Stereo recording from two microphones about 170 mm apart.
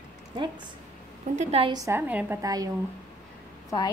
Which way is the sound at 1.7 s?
15° right (ahead or behind).